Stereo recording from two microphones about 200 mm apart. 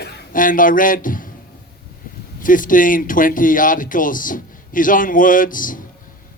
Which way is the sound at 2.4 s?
40° left (ahead or behind).